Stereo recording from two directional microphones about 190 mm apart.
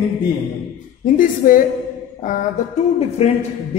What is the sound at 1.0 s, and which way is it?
A woman's voice, 45° left (ahead or behind).